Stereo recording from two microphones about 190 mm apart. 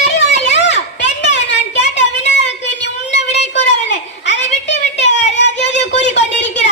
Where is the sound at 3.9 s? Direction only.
65° left (ahead or behind).